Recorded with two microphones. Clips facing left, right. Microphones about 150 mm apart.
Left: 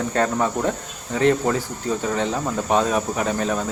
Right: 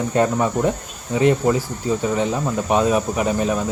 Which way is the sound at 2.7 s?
10° right (ahead or behind).